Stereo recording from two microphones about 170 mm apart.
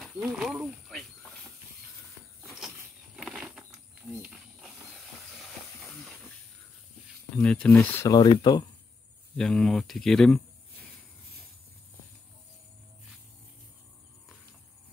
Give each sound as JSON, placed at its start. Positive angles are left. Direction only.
{"t": 0.0, "sound": "wild animals", "side_deg": 0}
{"t": 2.4, "sound": "a sound", "side_deg": -5}
{"t": 3.2, "sound": "bird flight", "side_deg": -5}
{"t": 4.1, "sound": "a sound", "side_deg": -5}
{"t": 7.3, "sound": "speech", "side_deg": 5}
{"t": 8.1, "sound": "speech", "side_deg": 25}
{"t": 9.4, "sound": "speech", "side_deg": 5}